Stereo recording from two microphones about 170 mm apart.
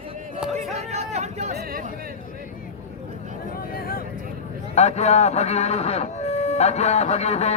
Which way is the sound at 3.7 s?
60° left (ahead or behind).